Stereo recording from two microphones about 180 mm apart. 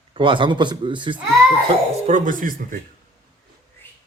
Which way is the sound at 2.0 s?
45° right (ahead or behind).